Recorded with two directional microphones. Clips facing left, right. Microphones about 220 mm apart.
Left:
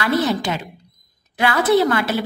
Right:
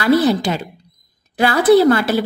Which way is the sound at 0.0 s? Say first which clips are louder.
Right 5 dB; 35° right (ahead or behind).